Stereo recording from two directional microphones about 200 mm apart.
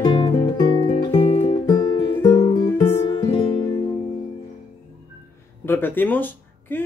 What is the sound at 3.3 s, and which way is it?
Music, 25° left (ahead or behind).